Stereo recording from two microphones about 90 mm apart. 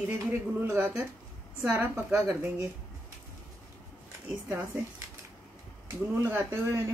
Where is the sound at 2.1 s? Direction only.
35° right (ahead or behind).